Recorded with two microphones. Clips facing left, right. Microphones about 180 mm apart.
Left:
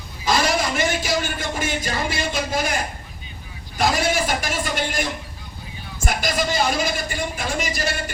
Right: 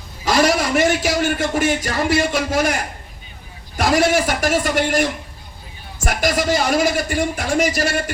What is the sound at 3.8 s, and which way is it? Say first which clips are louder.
A man's voice: right 5 dB; 75° right (ahead or behind).